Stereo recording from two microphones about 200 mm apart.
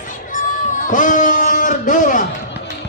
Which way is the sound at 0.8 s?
40° left (ahead or behind).